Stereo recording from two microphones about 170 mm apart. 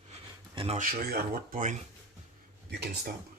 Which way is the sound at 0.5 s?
35° right (ahead or behind).